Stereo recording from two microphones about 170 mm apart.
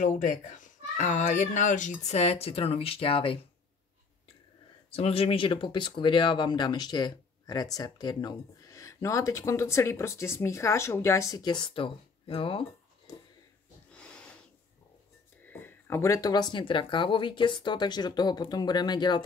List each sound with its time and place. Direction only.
0.0 s speech: 50° left (ahead or behind); by 3.3 s 35° left (ahead or behind)
4.9 s speech: 35° left (ahead or behind)
13.1 s a sound: 20° left (ahead or behind)
13.9 s wheeze: 5° left (ahead or behind)
15.4 s speech: 10° left (ahead or behind)